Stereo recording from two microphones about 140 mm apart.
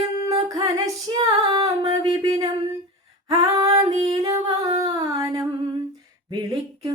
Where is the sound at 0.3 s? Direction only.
25° right (ahead or behind).